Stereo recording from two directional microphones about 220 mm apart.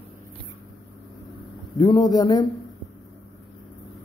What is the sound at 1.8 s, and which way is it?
Speech, 20° left (ahead or behind).